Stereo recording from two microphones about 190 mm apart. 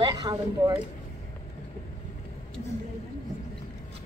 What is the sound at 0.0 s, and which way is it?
Speech, 20° right (ahead or behind).